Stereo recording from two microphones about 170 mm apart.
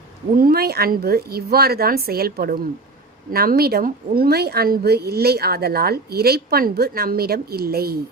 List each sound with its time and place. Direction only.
0.3 s a woman's voice: 60° right (ahead or behind)